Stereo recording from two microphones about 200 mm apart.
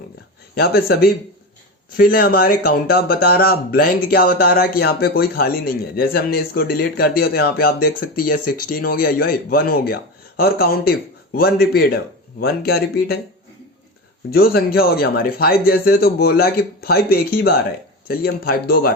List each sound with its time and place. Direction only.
0.5 s speech: 50° left (ahead or behind)
14.3 s speech: 50° left (ahead or behind)